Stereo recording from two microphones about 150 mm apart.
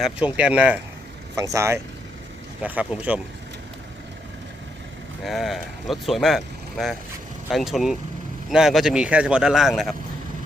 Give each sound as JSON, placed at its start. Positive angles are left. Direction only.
{"t": 0.0, "sound": "speech", "side_deg": -10}
{"t": 1.4, "sound": "speech", "side_deg": -20}
{"t": 5.2, "sound": "speech", "side_deg": 0}